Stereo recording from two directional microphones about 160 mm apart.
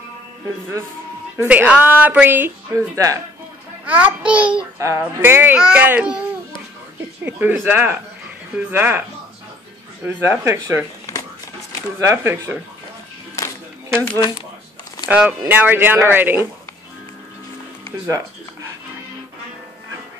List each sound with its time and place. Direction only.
1.4 s speech: 10° right (ahead or behind)
4.7 s speech: 20° right (ahead or behind)
7.2 s speech: 10° right (ahead or behind)
10.0 s speech: 15° right (ahead or behind)
11.1 s a sound: 20° left (ahead or behind)
12.0 s speech: 15° right (ahead or behind)
13.8 s speech: 15° right (ahead or behind)
18.0 s music: 20° right (ahead or behind)